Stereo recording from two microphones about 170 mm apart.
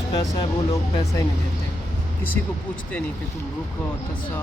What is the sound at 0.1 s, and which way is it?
Speech, 20° left (ahead or behind).